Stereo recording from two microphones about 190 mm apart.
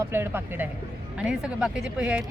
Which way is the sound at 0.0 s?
10° right (ahead or behind).